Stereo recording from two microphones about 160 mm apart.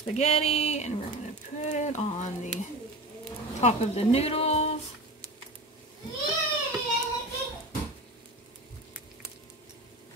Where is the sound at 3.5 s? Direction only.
45° left (ahead or behind).